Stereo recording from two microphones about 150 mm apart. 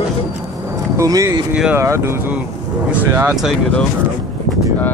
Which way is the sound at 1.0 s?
20° right (ahead or behind).